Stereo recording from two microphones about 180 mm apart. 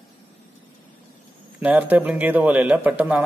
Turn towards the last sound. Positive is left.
turn(degrees=-10)  # may be behind; listen again after turning